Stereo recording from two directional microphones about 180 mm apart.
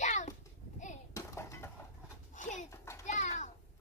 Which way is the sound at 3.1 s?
40° left (ahead or behind).